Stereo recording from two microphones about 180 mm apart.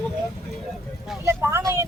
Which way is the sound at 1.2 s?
15° right (ahead or behind).